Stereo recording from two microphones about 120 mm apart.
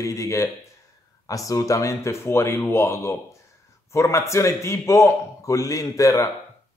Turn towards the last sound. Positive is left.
turn(degrees=30)  # may be behind; listen again after turning